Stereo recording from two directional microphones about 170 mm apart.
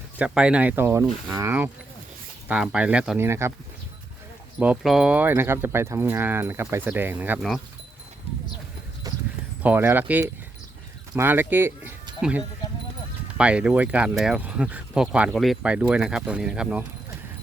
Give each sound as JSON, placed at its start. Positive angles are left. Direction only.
{"t": 0.2, "sound": "speech", "side_deg": -5}
{"t": 4.6, "sound": "speech", "side_deg": -5}
{"t": 9.0, "sound": "clip-clop", "side_deg": -20}
{"t": 9.6, "sound": "speech", "side_deg": -10}
{"t": 13.3, "sound": "speech", "side_deg": -5}